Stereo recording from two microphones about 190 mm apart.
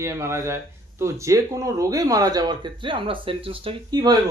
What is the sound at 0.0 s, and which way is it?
Speech, 15° right (ahead or behind).